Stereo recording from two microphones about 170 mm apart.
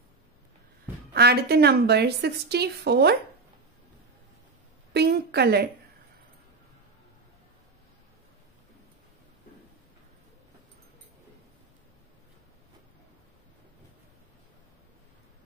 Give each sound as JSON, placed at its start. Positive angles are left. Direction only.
{"t": 1.1, "sound": "a woman's voice", "side_deg": -70}
{"t": 4.9, "sound": "a woman's voice", "side_deg": -75}